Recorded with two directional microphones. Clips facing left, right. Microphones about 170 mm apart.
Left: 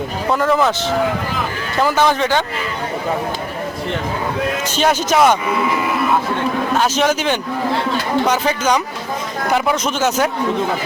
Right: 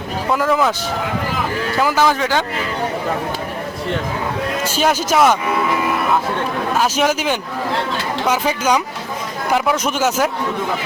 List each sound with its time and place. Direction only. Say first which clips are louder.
0.3 s speech: left 1 dB; 5° right (ahead or behind)
1.8 s speech: left 2 dB; 5° right (ahead or behind)
4.8 s speech: left 1 dB; 5° right (ahead or behind)
6.7 s a man's voice: even; 5° right (ahead or behind)